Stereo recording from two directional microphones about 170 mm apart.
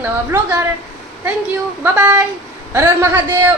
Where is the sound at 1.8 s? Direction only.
10° right (ahead or behind).